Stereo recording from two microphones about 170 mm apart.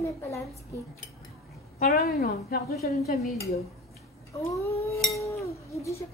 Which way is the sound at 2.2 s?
65° left (ahead or behind).